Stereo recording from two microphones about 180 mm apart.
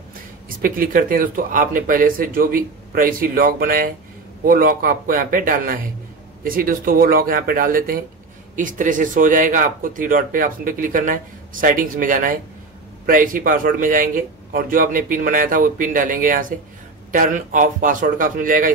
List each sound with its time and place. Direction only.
0.1 s speech: 50° right (ahead or behind)